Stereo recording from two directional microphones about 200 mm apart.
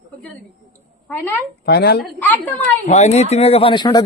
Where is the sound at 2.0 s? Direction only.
10° left (ahead or behind).